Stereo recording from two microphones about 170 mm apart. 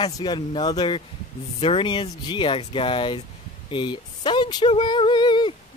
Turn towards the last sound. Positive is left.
turn(degrees=25)  # may be behind; listen again after turning